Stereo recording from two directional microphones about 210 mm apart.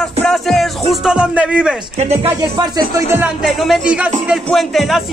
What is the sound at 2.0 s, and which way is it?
Speech, 30° right (ahead or behind).